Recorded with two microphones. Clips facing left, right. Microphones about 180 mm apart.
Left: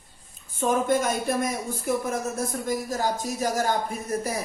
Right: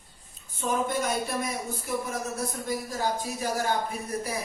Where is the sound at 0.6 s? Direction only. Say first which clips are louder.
Left 5 dB; 50° left (ahead or behind).